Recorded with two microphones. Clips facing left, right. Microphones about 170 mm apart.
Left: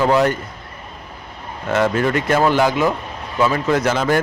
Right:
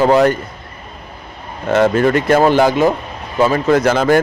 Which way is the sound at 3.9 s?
55° right (ahead or behind).